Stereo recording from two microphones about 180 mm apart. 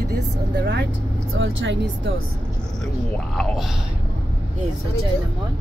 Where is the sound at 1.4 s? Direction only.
90° right.